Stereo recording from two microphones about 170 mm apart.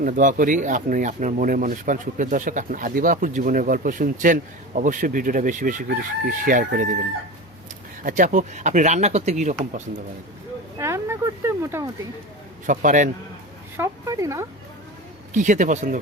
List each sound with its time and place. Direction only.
0.0 s speech: 50° right (ahead or behind)
8.0 s speech: 50° right (ahead or behind)
10.8 s a sound: 15° right (ahead or behind)
12.6 s speech: 50° right (ahead or behind)
13.7 s speech: 20° right (ahead or behind)
15.3 s speech: 45° right (ahead or behind)